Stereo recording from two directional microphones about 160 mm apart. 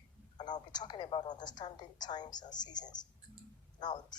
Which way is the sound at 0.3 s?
25° left (ahead or behind).